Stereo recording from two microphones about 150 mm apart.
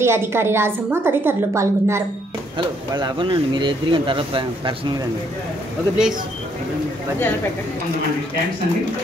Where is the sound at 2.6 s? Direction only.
35° right (ahead or behind).